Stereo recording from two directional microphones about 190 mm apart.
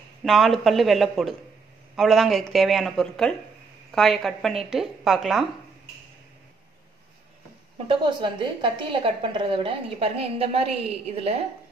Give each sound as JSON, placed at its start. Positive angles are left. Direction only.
{"t": 0.2, "sound": "speech", "side_deg": 0}
{"t": 7.9, "sound": "a woman's voice", "side_deg": -25}